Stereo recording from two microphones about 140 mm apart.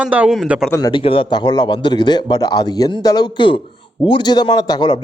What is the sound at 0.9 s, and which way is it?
A man's voice, 40° left (ahead or behind).